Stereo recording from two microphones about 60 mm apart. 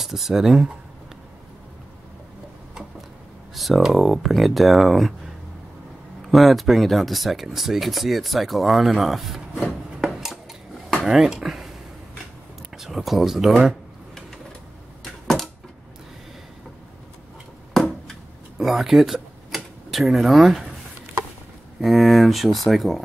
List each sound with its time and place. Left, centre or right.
0.0 s speech: centre
3.5 s speech: centre
6.2 s speech: centre
12.7 s speech: centre
15.2 s a sound: centre
17.7 s a sound: centre
18.6 s speech: centre
19.1 s a sound: centre
21.8 s speech: centre